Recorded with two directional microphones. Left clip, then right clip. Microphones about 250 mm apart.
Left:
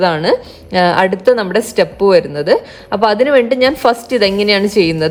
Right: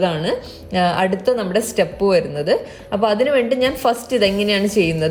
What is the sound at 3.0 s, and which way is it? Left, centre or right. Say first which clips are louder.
A woman's voice: left 6 dB; left.